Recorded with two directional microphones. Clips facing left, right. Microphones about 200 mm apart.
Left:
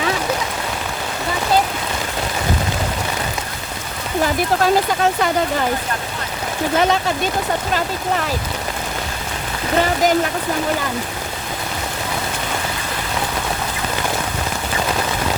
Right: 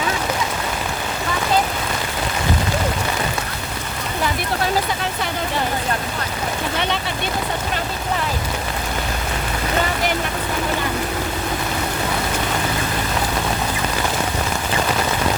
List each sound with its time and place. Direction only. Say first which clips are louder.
6.7 s speech: left 9 dB; 40° left (ahead or behind)